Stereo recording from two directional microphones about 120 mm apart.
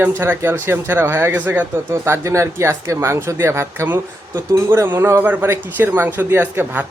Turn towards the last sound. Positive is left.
turn(degrees=-15)  # may be behind; listen again after turning